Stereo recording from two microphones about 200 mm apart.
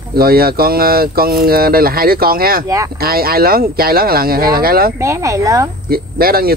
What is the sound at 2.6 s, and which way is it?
Speech, 15° right (ahead or behind).